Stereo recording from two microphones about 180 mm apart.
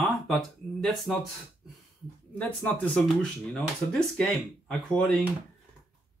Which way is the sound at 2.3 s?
10° left (ahead or behind).